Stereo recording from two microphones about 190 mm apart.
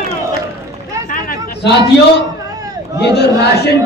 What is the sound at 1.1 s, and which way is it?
Chatter, 45° left (ahead or behind).